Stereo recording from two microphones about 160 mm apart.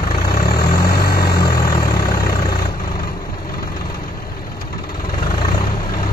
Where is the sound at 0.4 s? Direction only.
70° left (ahead or behind).